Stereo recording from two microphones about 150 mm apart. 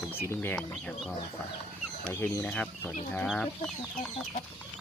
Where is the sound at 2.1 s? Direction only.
15° left (ahead or behind).